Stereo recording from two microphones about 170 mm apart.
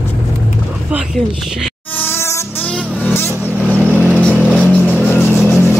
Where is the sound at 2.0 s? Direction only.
15° left (ahead or behind).